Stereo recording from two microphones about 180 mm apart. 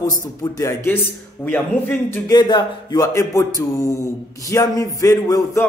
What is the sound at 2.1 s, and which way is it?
Speech, 20° left (ahead or behind).